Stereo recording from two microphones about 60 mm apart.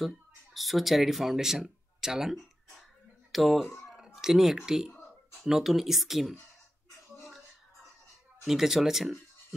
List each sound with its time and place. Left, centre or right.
0.6 s speech: centre
8.5 s speech: centre